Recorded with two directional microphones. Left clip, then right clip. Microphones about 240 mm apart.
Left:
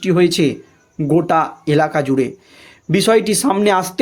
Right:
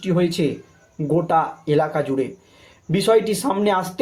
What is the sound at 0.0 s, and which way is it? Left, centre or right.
Speech, left.